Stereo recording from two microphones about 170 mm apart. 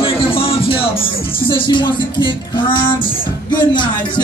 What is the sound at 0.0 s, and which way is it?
Music, 30° left (ahead or behind).